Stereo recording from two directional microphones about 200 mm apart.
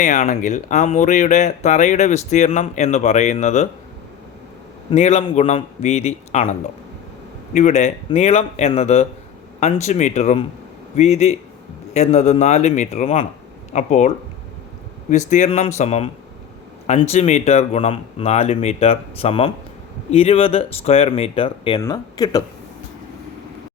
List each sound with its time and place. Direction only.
0.0 s speech: 40° left (ahead or behind)
4.9 s speech: 30° left (ahead or behind)
15.1 s speech: 35° left (ahead or behind); by 22.4 s 20° left (ahead or behind)